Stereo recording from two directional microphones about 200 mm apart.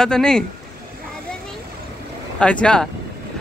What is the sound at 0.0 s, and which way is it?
Speech, 5° left (ahead or behind).